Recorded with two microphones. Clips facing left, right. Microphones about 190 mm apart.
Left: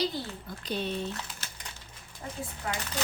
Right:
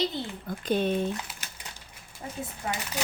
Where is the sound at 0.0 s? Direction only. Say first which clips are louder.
Right 1 dB; 20° right (ahead or behind).